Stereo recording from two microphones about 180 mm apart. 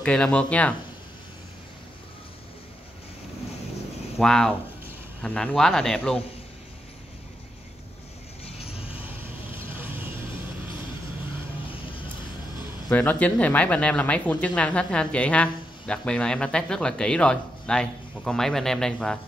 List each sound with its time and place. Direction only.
0.0 s speech: 5° left (ahead or behind)
4.2 s speech: 5° left (ahead or behind)
8.5 s vehicle: 35° left (ahead or behind)
9.8 s vehicle: 10° right (ahead or behind)
12.9 s speech: 10° left (ahead or behind)